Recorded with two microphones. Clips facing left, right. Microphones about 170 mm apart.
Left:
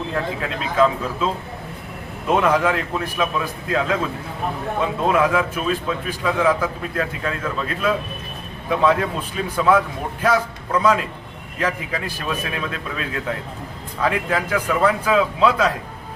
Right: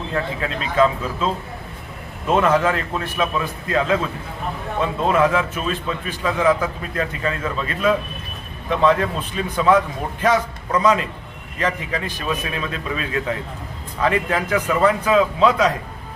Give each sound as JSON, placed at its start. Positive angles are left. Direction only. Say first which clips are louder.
{"t": 0.1, "sound": "a man's voice", "louder": "right 4 dB", "side_deg": 5}
{"t": 2.3, "sound": "a man's voice", "louder": "right 1 dB", "side_deg": 10}
{"t": 14.7, "sound": "a man's voice", "louder": "right 1 dB", "side_deg": -5}
{"t": 15.0, "sound": "a man's voice", "louder": "right 1 dB", "side_deg": 5}